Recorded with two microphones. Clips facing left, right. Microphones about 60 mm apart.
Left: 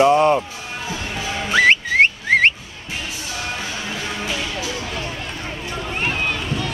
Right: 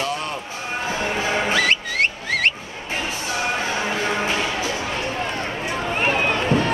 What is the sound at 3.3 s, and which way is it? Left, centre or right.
Music, right.